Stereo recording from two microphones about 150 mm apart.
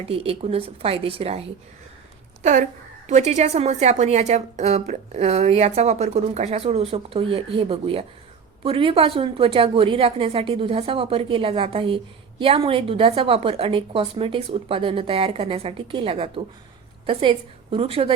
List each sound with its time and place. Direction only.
0.1 s a woman's voice: 40° right (ahead or behind)
2.4 s a woman's voice: 55° right (ahead or behind); by 18.1 s 40° right (ahead or behind)